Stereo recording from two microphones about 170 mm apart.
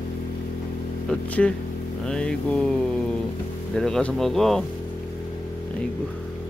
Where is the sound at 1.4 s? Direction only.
5° left (ahead or behind).